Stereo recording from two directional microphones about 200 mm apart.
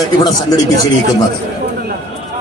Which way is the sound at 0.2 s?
20° left (ahead or behind).